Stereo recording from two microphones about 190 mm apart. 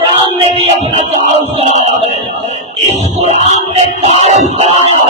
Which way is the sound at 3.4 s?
35° left (ahead or behind).